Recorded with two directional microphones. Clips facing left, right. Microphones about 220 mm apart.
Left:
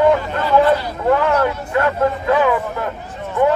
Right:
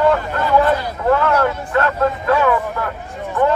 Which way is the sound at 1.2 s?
15° left (ahead or behind).